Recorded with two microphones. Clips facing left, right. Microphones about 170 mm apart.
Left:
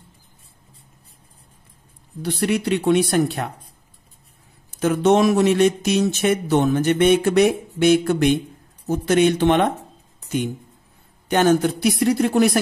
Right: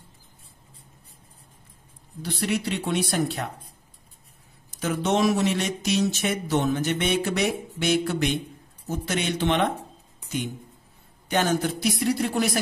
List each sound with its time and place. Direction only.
2.2 s speech: 60° left (ahead or behind)
4.6 s speech: 55° left (ahead or behind)
11.2 s speech: 55° left (ahead or behind)